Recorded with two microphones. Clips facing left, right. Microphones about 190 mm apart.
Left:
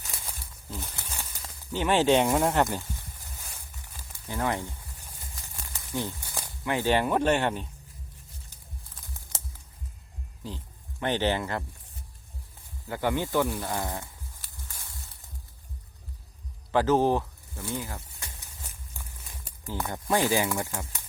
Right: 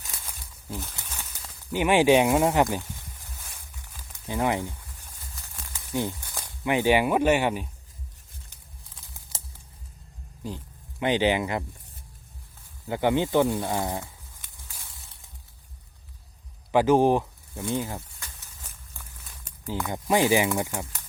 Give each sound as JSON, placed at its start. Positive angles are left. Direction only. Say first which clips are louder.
{"t": 0.8, "sound": "a sound", "louder": "right 1 dB", "side_deg": 10}
{"t": 1.7, "sound": "speech", "louder": "right 3 dB", "side_deg": -15}
{"t": 4.3, "sound": "speech", "louder": "right 4 dB", "side_deg": -15}
{"t": 5.9, "sound": "speech", "louder": "right 4 dB", "side_deg": -15}
{"t": 6.2, "sound": "snake", "louder": "left 1 dB", "side_deg": 10}
{"t": 6.7, "sound": "speech", "louder": "right 3 dB", "side_deg": -15}
{"t": 11.0, "sound": "speech", "louder": "right 4 dB", "side_deg": -15}
{"t": 12.9, "sound": "speech", "louder": "right 4 dB", "side_deg": -20}
{"t": 16.7, "sound": "speech", "louder": "right 3 dB", "side_deg": -15}
{"t": 19.9, "sound": "speech", "louder": "right 4 dB", "side_deg": -15}